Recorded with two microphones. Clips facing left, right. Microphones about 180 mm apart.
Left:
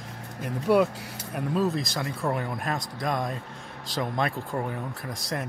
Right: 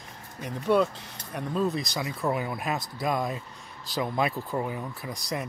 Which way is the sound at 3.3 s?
65° left (ahead or behind).